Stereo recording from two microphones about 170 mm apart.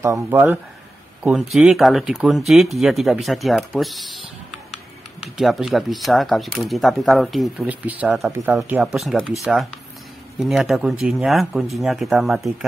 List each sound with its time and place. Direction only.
0.0 s speech: 15° right (ahead or behind)
1.2 s speech: centre (ahead or behind)
5.2 s speech: centre (ahead or behind)